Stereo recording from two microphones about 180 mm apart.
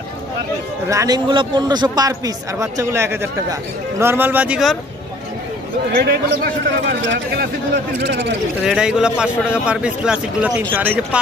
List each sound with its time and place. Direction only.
0.8 s a man's voice: 20° right (ahead or behind); by 4.7 s 5° right (ahead or behind)
5.9 s a man's voice: 60° right (ahead or behind)
8.6 s a man's voice: 5° right (ahead or behind)